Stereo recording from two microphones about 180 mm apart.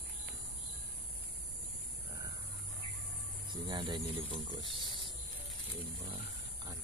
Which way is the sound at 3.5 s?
25° right (ahead or behind).